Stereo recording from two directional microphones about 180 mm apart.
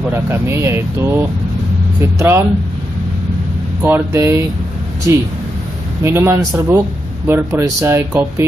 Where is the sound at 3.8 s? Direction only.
15° right (ahead or behind).